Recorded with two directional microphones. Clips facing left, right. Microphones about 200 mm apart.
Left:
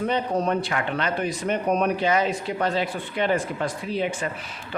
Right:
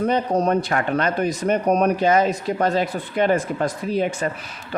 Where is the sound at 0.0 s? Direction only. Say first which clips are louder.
Right 4 dB; 40° right (ahead or behind).